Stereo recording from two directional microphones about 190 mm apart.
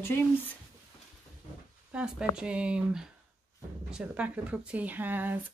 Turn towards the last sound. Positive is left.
turn(degrees=-10)  # may be behind; listen again after turning